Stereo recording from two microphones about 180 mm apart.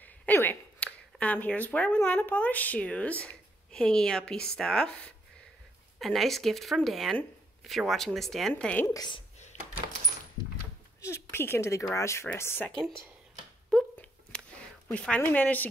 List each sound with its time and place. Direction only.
0.0 s a sound: 10° left (ahead or behind)
0.8 s speech: 5° left (ahead or behind)
8.9 s a woman's voice: 25° left (ahead or behind)
11.0 s a woman's voice: 15° left (ahead or behind)
13.7 s a sound: 5° left (ahead or behind)
14.9 s speech: 5° left (ahead or behind)